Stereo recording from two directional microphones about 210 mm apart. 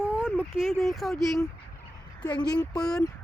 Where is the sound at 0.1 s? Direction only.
5° right (ahead or behind).